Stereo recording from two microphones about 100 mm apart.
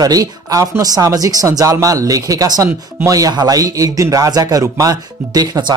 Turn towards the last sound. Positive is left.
turn(degrees=-45)  # may be behind; listen again after turning